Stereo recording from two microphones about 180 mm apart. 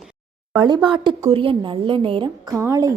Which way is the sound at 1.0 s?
30° right (ahead or behind).